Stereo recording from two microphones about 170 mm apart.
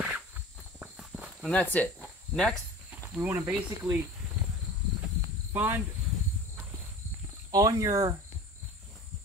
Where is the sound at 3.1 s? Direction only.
10° right (ahead or behind).